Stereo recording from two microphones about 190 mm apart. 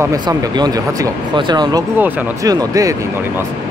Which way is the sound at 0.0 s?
20° right (ahead or behind).